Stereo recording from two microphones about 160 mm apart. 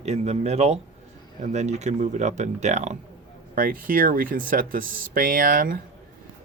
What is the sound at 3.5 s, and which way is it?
Speech, 60° right (ahead or behind).